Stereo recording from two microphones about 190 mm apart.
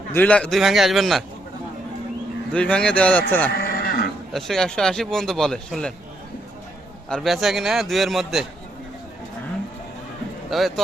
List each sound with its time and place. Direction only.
0.1 s speech: 10° left (ahead or behind)
2.5 s a man's voice: 5° left (ahead or behind)
3.5 s livestock: 55° left (ahead or behind)
4.3 s speech: centre (ahead or behind)
7.1 s speech: centre (ahead or behind)
10.5 s speech: centre (ahead or behind)